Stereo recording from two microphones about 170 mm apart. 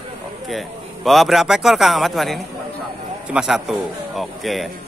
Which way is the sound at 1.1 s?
Centre (ahead or behind).